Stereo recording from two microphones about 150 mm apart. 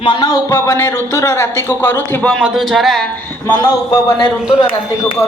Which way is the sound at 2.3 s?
5° right (ahead or behind).